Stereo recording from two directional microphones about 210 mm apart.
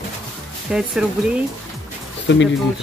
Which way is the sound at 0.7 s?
Centre (ahead or behind).